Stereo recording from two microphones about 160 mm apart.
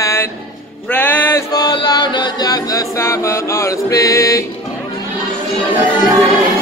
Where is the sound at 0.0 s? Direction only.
15° left (ahead or behind).